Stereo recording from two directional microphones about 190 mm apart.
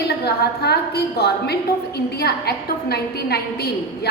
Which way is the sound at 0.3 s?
60° left (ahead or behind).